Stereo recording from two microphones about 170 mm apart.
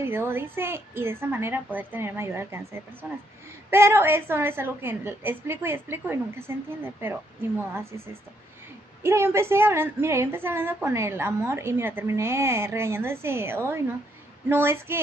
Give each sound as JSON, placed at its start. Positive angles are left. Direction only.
{"t": 0.0, "sound": "a woman's voice", "side_deg": -15}